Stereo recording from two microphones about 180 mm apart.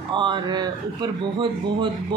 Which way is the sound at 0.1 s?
25° right (ahead or behind).